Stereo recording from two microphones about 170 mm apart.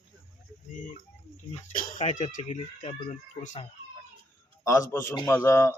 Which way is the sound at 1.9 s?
45° left (ahead or behind).